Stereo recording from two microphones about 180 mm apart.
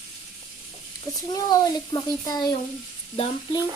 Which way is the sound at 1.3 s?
20° left (ahead or behind).